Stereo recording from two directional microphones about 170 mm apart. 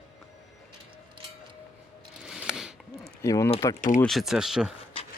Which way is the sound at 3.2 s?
20° left (ahead or behind).